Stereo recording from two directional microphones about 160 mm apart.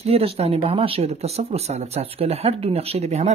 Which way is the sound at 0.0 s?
40° right (ahead or behind).